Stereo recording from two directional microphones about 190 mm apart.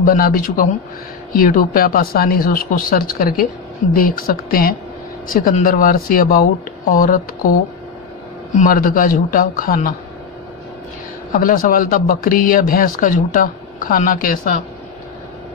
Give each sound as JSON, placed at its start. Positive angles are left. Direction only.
{"t": 0.0, "sound": "speech", "side_deg": 45}
{"t": 8.5, "sound": "speech", "side_deg": 45}
{"t": 11.3, "sound": "speech", "side_deg": 45}